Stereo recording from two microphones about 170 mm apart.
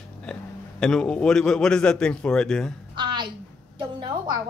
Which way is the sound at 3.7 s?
25° right (ahead or behind).